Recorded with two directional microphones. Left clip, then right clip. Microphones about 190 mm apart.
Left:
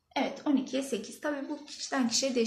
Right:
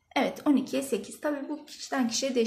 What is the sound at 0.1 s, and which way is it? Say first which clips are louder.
A woman's voice: right 4 dB; 55° right (ahead or behind).